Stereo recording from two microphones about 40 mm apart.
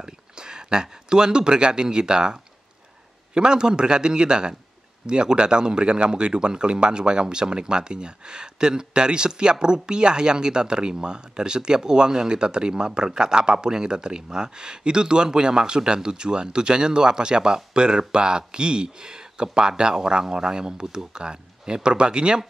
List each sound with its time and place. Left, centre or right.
0.0 s speech: centre
3.3 s speech: centre